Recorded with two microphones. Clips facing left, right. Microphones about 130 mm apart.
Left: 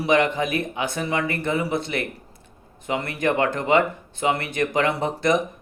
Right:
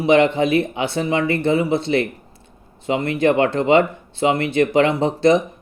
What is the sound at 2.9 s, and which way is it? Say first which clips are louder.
A man's voice: right 6 dB; 25° right (ahead or behind).